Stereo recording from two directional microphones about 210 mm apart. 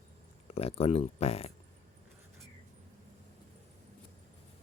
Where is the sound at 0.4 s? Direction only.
30° left (ahead or behind).